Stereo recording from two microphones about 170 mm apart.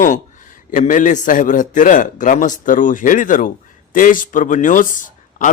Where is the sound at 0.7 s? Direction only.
50° left (ahead or behind).